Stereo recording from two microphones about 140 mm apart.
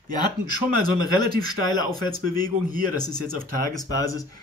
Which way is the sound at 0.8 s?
30° left (ahead or behind).